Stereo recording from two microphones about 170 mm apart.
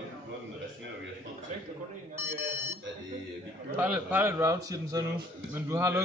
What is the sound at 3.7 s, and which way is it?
A man's voice, 10° right (ahead or behind).